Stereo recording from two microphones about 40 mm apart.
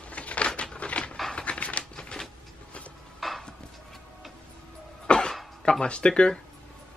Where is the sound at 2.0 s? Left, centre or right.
Centre.